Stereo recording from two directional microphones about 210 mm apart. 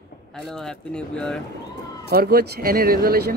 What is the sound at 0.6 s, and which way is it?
Speech, 5° left (ahead or behind).